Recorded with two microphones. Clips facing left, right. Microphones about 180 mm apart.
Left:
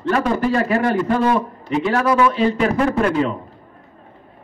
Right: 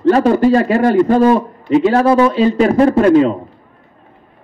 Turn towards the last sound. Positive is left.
turn(degrees=-30)  # may be behind; listen again after turning